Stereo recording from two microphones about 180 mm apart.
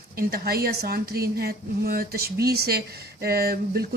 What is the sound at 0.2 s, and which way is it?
A woman's voice, 60° right (ahead or behind).